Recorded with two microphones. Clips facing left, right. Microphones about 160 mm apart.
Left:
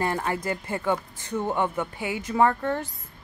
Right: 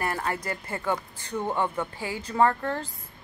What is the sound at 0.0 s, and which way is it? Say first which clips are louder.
Speech: left 3 dB; 20° left (ahead or behind).